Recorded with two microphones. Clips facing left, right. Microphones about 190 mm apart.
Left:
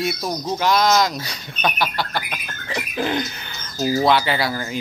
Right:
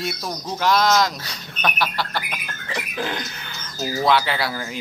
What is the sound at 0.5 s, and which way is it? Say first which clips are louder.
Speech: left 1 dB; centre (ahead or behind).